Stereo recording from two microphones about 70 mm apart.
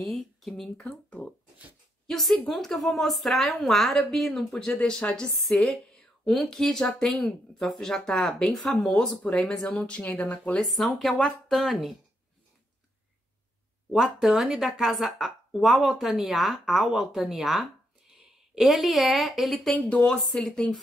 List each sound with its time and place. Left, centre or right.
0.1 s speech: centre
0.7 s speech: centre
2.0 s speech: centre
4.7 s speech: centre
10.6 s speech: centre
13.9 s speech: centre